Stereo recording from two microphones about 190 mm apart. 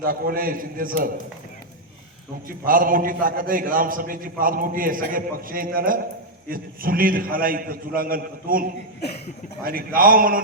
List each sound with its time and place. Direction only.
0.0 s a man's voice: 50° right (ahead or behind)
2.5 s a man's voice: 45° right (ahead or behind)
9.6 s a man's voice: 50° right (ahead or behind)